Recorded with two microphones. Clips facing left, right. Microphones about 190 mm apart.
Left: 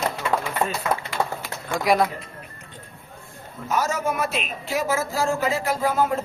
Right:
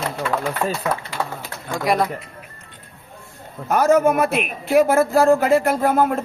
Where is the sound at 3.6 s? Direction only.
55° right (ahead or behind).